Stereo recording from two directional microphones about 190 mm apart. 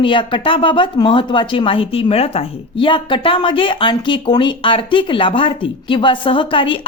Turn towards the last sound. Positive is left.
turn(degrees=25)  # may be behind; listen again after turning